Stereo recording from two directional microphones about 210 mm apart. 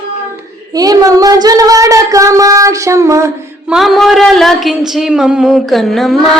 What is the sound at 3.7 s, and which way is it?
Speech, centre (ahead or behind).